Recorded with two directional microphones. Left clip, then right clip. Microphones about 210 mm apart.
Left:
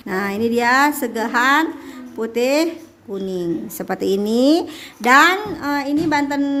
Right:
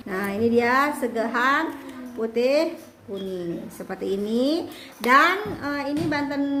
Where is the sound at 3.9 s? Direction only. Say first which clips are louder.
Left 7 dB; 50° left (ahead or behind).